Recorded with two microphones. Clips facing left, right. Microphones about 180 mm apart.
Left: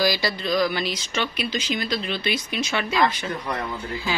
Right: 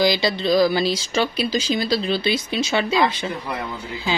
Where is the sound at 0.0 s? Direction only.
20° right (ahead or behind).